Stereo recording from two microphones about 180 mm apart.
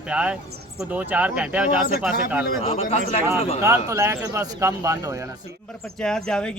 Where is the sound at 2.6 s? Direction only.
35° left (ahead or behind).